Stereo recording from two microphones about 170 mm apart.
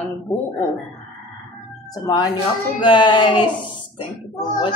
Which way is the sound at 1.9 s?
20° left (ahead or behind).